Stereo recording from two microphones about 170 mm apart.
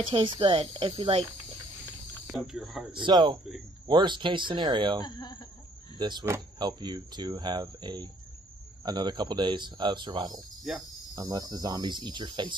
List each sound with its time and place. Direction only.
0.1 s speech: 30° right (ahead or behind)
2.2 s speech: centre (ahead or behind)
2.9 s speech: 25° right (ahead or behind)
5.0 s speech: 25° left (ahead or behind)
5.9 s speech: 25° right (ahead or behind)